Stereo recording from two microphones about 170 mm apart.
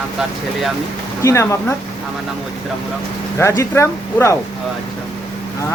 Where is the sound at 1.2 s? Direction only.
15° left (ahead or behind).